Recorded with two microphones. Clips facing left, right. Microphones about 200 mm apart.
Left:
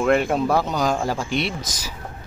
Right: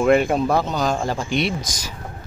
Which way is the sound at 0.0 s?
Centre (ahead or behind).